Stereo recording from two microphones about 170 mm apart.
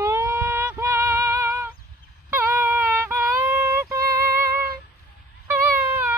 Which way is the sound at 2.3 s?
15° right (ahead or behind).